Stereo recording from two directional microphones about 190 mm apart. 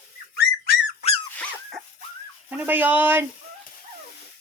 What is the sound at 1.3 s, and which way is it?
Dog, 5° left (ahead or behind).